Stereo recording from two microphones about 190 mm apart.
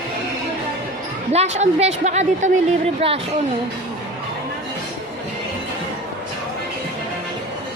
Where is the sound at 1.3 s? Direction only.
35° right (ahead or behind).